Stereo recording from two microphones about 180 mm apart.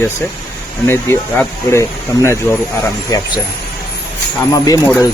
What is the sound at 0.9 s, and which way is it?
Speech, 15° left (ahead or behind).